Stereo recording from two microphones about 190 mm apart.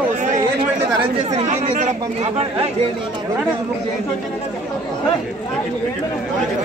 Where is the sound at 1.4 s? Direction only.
40° right (ahead or behind).